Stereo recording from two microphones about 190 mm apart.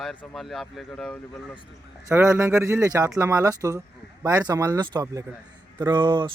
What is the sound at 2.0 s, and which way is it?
Speech, 15° right (ahead or behind).